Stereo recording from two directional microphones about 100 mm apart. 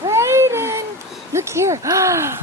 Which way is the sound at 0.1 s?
25° right (ahead or behind).